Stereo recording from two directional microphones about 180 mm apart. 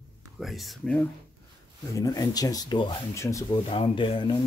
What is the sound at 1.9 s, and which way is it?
Speech, 20° left (ahead or behind).